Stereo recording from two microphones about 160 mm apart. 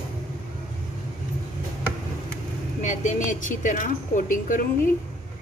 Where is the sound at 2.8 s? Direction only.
50° left (ahead or behind).